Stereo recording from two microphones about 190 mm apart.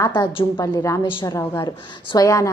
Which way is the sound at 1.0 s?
25° left (ahead or behind).